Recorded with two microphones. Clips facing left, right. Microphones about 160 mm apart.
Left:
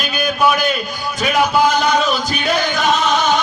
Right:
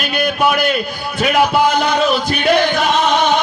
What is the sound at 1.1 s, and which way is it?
Music, 60° right (ahead or behind).